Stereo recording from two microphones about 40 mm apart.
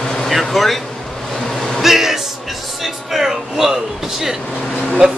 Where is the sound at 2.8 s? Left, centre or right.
Centre.